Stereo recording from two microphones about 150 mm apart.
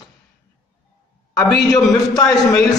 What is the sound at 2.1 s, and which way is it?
Speech, 25° left (ahead or behind).